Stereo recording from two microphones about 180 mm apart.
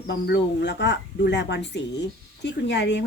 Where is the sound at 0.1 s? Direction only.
70° left (ahead or behind).